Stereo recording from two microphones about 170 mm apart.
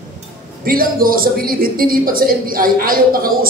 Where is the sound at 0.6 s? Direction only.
60° right (ahead or behind).